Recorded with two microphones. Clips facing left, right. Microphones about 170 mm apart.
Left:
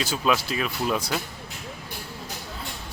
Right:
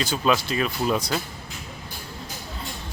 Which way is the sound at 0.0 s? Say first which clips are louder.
Right 2 dB; 5° left (ahead or behind).